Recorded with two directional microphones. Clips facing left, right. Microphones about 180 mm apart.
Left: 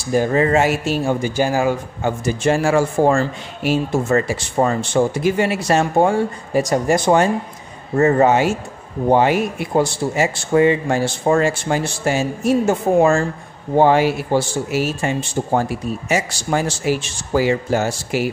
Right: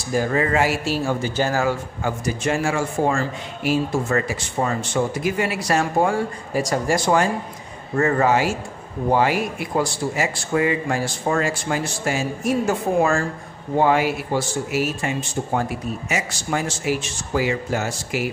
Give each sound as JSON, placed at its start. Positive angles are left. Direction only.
{"t": 0.1, "sound": "speech", "side_deg": 25}
{"t": 2.2, "sound": "speech", "side_deg": 30}
{"t": 4.6, "sound": "speech", "side_deg": 40}
{"t": 4.9, "sound": "speech", "side_deg": 30}